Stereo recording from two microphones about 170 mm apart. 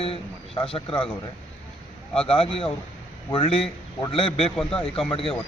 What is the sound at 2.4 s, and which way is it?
Speech, 30° left (ahead or behind).